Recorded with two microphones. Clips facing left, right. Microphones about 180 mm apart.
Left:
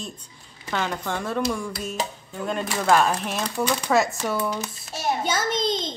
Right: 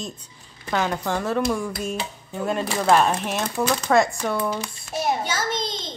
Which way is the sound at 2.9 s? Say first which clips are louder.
Right 1 dB; centre (ahead or behind).